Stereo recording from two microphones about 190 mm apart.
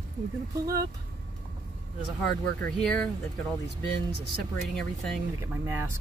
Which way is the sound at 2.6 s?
5° left (ahead or behind).